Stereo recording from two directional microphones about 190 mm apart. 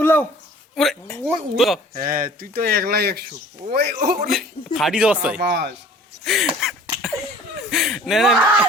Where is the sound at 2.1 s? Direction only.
50° right (ahead or behind).